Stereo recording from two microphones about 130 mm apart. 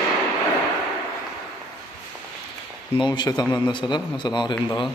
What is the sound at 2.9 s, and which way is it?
A man's voice, 35° left (ahead or behind).